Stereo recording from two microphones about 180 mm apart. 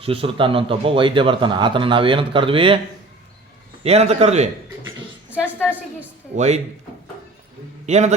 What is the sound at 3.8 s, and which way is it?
Speech, 35° right (ahead or behind).